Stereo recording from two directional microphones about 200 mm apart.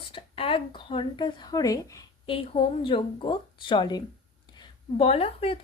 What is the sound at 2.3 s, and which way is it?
A woman's voice, 30° left (ahead or behind).